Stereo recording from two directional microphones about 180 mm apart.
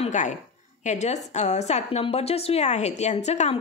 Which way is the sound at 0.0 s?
40° left (ahead or behind).